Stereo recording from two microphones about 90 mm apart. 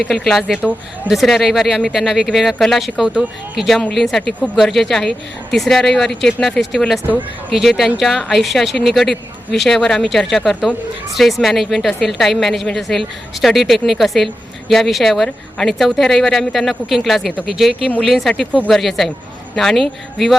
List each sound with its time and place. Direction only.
0.1 s speech: centre (ahead or behind)